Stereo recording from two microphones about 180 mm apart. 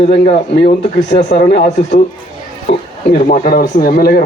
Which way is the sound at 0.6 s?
55° left (ahead or behind).